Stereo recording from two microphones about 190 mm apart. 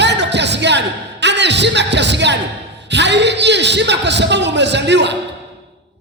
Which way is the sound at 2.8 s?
65° right (ahead or behind).